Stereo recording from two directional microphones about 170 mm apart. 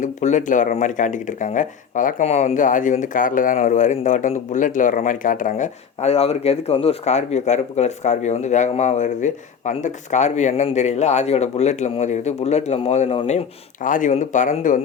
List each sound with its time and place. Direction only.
0.0 s speech: 45° left (ahead or behind)
13.8 s speech: 50° left (ahead or behind)